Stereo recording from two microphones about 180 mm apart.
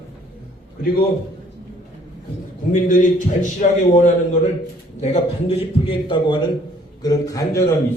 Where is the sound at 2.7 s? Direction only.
45° left (ahead or behind).